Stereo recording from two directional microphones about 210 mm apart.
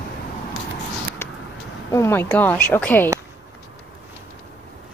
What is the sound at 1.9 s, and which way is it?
A woman's voice, 15° left (ahead or behind).